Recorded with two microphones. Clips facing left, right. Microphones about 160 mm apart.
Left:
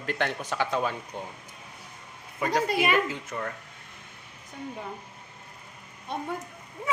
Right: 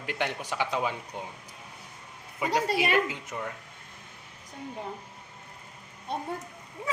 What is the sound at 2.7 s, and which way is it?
Speech, 50° left (ahead or behind).